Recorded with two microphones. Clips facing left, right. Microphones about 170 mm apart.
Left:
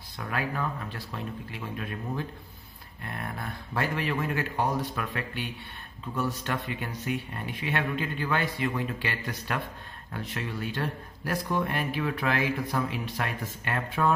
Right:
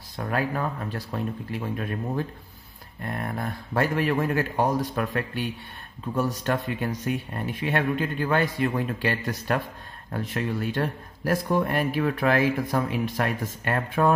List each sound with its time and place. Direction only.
0.2 s speech: 40° right (ahead or behind)